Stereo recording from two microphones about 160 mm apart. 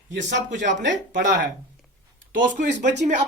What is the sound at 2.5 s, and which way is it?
Speech, 50° right (ahead or behind).